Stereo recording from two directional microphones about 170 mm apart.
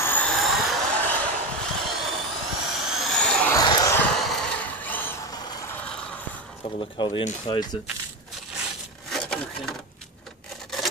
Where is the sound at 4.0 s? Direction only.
Centre (ahead or behind).